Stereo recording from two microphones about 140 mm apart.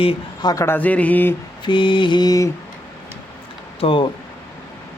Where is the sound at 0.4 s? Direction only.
20° left (ahead or behind).